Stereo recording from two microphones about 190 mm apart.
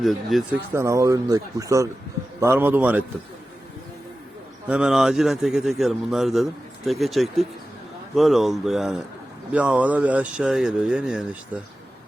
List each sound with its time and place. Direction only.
0.0 s a man's voice: centre (ahead or behind)
0.7 s speech: 15° right (ahead or behind)
4.7 s a man's voice: 5° right (ahead or behind)